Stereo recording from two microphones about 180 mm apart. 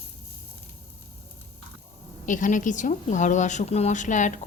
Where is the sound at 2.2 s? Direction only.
45° left (ahead or behind).